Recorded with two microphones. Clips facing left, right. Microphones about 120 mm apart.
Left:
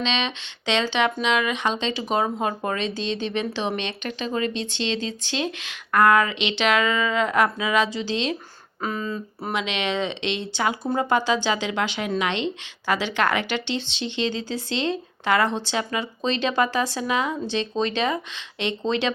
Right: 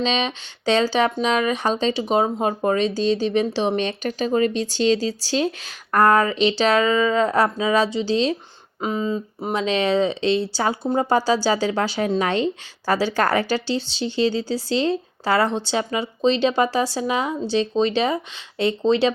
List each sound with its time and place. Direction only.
0.0 s speech: 40° right (ahead or behind)
9.5 s speech: 35° right (ahead or behind)